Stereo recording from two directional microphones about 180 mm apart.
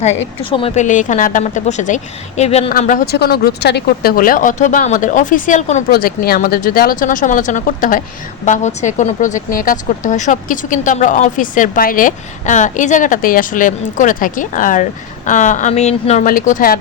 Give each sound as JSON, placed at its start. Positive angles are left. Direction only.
{"t": 0.8, "sound": "speech", "side_deg": 45}
{"t": 3.2, "sound": "speech", "side_deg": 60}
{"t": 5.9, "sound": "speech", "side_deg": 55}